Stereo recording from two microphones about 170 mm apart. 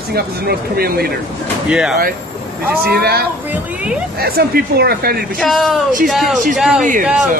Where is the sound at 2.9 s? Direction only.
70° right (ahead or behind).